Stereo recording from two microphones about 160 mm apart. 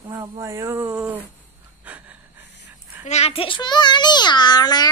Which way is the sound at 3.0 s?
40° left (ahead or behind).